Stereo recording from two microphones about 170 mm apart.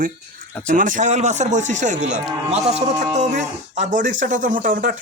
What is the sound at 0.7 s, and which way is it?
Speech, 50° right (ahead or behind).